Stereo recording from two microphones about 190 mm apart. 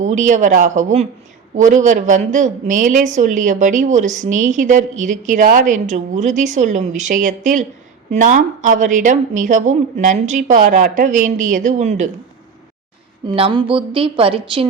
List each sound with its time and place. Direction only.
0.0 s a woman's voice: 40° right (ahead or behind)
13.2 s a woman's voice: 25° right (ahead or behind)